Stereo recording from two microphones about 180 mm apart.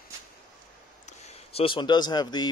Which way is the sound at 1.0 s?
35° left (ahead or behind).